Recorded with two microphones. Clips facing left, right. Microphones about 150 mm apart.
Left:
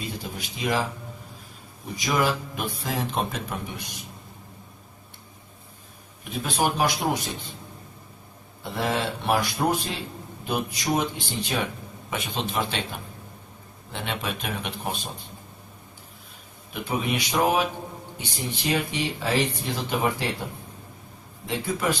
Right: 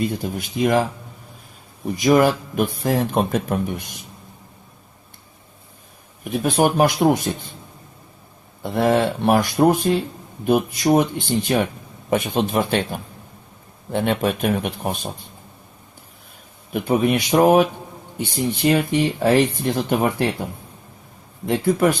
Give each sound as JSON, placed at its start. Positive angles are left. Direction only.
{"t": 0.0, "sound": "speech", "side_deg": -50}
{"t": 2.0, "sound": "speech", "side_deg": -50}
{"t": 6.4, "sound": "speech", "side_deg": -50}
{"t": 8.6, "sound": "speech", "side_deg": -50}
{"t": 16.7, "sound": "speech", "side_deg": -50}
{"t": 21.4, "sound": "speech", "side_deg": -55}